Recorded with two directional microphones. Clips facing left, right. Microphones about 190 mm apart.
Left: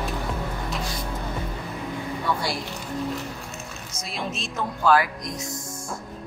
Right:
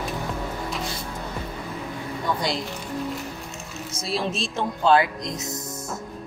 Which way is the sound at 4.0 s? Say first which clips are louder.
Right 5 dB; 35° right (ahead or behind).